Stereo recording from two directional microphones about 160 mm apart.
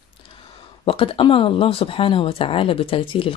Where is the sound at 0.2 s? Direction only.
35° left (ahead or behind).